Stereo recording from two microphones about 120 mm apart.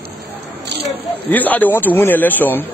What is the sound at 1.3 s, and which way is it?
Speech, 15° left (ahead or behind).